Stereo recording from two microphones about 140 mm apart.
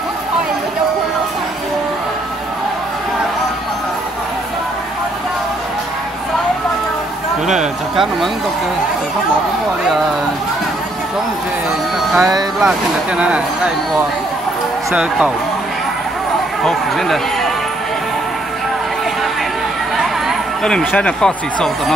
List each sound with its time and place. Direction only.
7.4 s speech: 5° right (ahead or behind)
12.2 s speech: 25° right (ahead or behind)
15.0 s speech: 10° right (ahead or behind)
16.6 s speech: centre (ahead or behind)
20.0 s speech: centre (ahead or behind)